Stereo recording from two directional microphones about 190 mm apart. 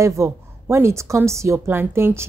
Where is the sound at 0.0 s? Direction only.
15° right (ahead or behind).